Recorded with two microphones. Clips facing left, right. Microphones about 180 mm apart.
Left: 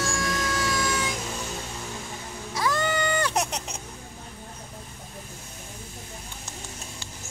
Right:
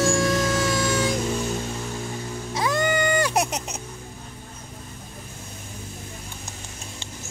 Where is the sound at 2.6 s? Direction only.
20° right (ahead or behind).